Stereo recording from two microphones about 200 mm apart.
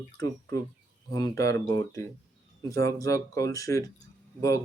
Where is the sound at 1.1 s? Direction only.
15° left (ahead or behind).